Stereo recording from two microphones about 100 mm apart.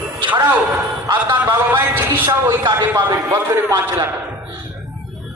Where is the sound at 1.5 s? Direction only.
20° right (ahead or behind).